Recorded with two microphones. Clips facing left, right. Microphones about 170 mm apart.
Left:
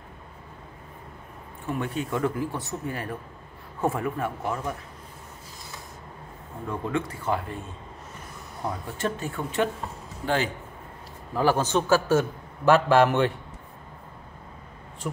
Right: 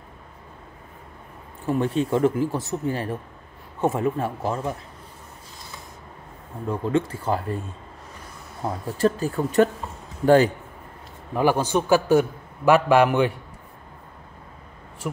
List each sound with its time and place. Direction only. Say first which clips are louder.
1.7 s speech: right 7 dB; 30° right (ahead or behind)
2.5 s speech: right 5 dB; centre (ahead or behind)
2.9 s speech: right 5 dB; 25° right (ahead or behind)
6.7 s speech: right 6 dB; 30° right (ahead or behind)
8.8 s speech: right 12 dB; 35° right (ahead or behind)
11.3 s a man's voice: right 2 dB; 15° right (ahead or behind)